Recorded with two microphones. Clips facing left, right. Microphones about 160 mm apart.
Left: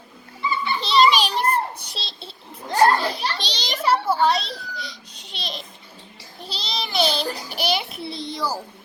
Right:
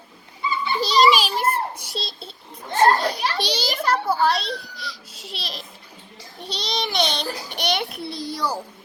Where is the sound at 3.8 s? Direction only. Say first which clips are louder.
Left 2 dB; 5° left (ahead or behind).